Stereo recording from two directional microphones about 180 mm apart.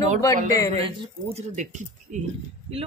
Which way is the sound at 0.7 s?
35° right (ahead or behind).